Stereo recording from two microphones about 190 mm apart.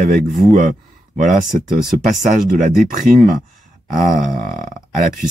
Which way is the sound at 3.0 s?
45° right (ahead or behind).